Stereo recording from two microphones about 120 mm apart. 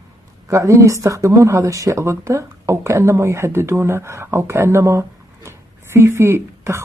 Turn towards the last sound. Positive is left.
turn(degrees=-20)  # may be behind; listen again after turning